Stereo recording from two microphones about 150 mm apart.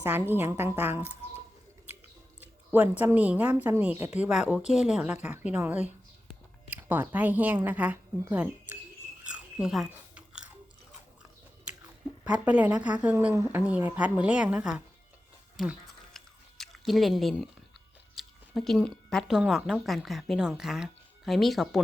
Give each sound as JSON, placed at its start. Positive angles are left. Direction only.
{"t": 0.0, "sound": "speech", "side_deg": -15}
{"t": 1.9, "sound": "a sound", "side_deg": -15}
{"t": 2.4, "sound": "speech", "side_deg": -10}
{"t": 9.2, "sound": "chewing", "side_deg": -5}
{"t": 12.2, "sound": "speech", "side_deg": -10}
{"t": 16.1, "sound": "squish", "side_deg": 0}
{"t": 18.1, "sound": "speech", "side_deg": 0}